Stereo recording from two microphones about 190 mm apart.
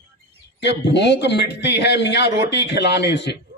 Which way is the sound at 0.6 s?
65° left (ahead or behind).